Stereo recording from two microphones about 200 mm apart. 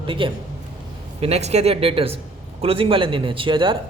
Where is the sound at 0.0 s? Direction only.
25° right (ahead or behind).